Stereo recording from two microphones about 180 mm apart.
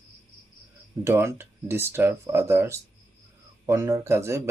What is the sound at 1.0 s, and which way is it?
Speech, 15° right (ahead or behind).